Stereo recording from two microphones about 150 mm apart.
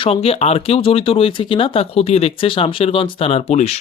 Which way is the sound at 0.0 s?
40° left (ahead or behind).